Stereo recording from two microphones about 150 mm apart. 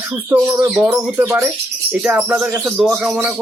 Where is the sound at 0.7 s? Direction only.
10° right (ahead or behind).